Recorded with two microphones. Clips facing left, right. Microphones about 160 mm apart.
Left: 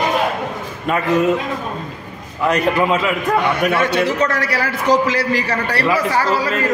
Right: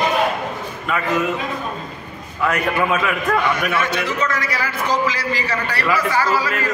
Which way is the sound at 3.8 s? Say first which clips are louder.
Left 5 dB; 65° left (ahead or behind).